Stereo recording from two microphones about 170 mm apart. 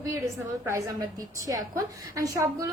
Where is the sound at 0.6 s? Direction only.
15° right (ahead or behind).